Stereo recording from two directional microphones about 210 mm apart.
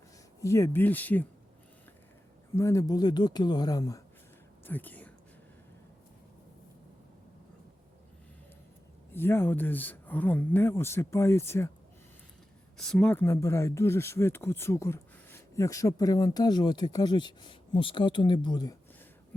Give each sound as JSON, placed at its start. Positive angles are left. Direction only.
{"t": 0.4, "sound": "speech", "side_deg": 15}
{"t": 2.6, "sound": "speech", "side_deg": 15}
{"t": 4.6, "sound": "whispering", "side_deg": 10}
{"t": 9.1, "sound": "speech", "side_deg": 10}
{"t": 12.7, "sound": "speech", "side_deg": 5}